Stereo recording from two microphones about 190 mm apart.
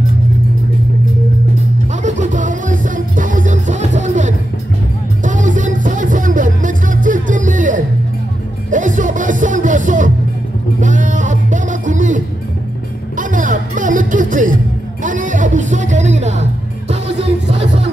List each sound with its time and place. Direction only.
2.0 s music: 40° right (ahead or behind)
13.2 s music: 45° right (ahead or behind)